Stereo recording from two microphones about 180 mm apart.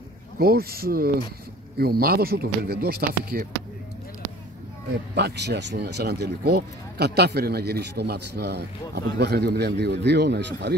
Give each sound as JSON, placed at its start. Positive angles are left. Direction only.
{"t": 0.4, "sound": "speech", "side_deg": -60}
{"t": 5.1, "sound": "speech", "side_deg": -70}